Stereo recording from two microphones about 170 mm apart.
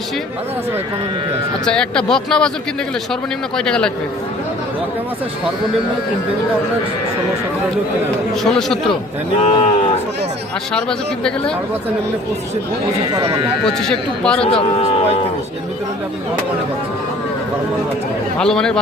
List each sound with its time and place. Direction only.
1.6 s speech: 5° left (ahead or behind)
3.6 s speech: 5° left (ahead or behind)
8.4 s speech: 5° left (ahead or behind)
9.4 s speech: 35° left (ahead or behind)
10.8 s speech: 5° left (ahead or behind)
13.7 s speech: 5° left (ahead or behind)
14.4 s speech: 35° left (ahead or behind)
18.3 s speech: 5° left (ahead or behind)